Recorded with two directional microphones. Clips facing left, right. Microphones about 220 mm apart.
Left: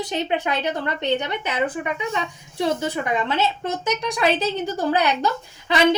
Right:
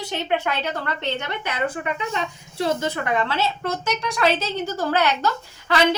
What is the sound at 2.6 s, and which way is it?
A woman's voice, 15° left (ahead or behind).